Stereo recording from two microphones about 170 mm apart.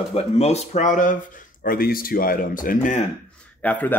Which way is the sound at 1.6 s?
60° left (ahead or behind).